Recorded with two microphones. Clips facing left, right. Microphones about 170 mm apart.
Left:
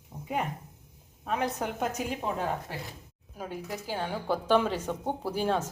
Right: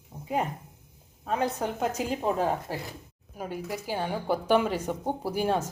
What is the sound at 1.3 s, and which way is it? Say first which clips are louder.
A woman's voice: right 2 dB; 30° right (ahead or behind).